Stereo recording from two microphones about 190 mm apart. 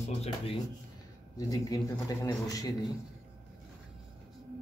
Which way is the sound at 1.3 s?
20° left (ahead or behind).